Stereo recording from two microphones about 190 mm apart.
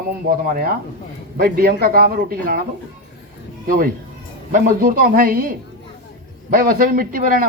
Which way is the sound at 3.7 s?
45° right (ahead or behind).